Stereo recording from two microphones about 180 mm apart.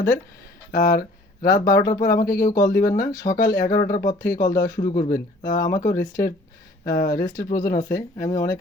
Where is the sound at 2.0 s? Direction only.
50° left (ahead or behind).